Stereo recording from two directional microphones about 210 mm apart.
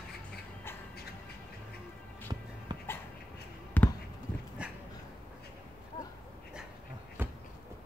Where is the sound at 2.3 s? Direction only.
20° right (ahead or behind).